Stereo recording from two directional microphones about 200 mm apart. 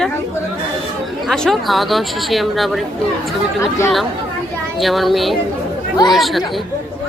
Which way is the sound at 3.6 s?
15° left (ahead or behind).